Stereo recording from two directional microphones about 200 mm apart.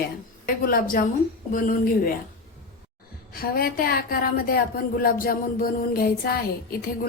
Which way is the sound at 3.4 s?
50° left (ahead or behind).